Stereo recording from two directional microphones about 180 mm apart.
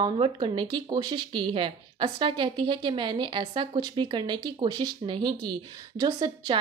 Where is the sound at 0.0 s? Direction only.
25° right (ahead or behind).